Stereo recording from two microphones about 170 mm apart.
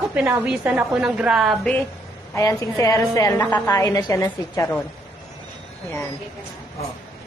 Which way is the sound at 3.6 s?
20° left (ahead or behind).